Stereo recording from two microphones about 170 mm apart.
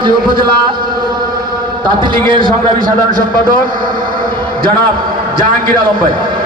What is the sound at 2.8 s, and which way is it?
A man's voice, 55° right (ahead or behind).